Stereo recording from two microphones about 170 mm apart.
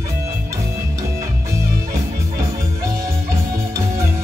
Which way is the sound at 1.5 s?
15° right (ahead or behind).